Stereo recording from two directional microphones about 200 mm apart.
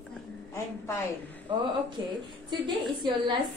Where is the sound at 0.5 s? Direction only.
15° left (ahead or behind).